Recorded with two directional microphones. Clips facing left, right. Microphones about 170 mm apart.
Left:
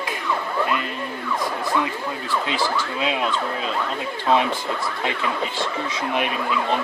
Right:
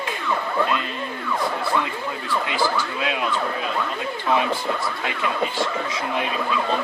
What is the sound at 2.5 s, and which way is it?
Speech, 25° left (ahead or behind).